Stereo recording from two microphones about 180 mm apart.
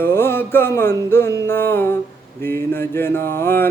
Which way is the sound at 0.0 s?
15° left (ahead or behind).